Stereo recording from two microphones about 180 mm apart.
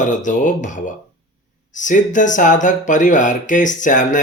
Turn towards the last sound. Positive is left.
turn(degrees=45)  # may be behind; listen again after turning